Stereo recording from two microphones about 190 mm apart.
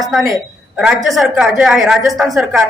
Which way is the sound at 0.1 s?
Centre (ahead or behind).